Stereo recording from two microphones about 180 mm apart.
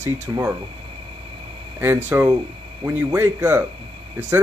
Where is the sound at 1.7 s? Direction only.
10° right (ahead or behind).